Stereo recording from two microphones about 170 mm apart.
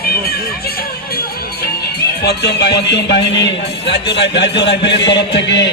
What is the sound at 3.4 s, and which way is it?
A man's voice, 85° left.